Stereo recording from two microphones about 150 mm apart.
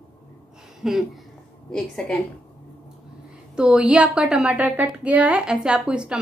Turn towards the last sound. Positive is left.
turn(degrees=-5)  # may be behind; listen again after turning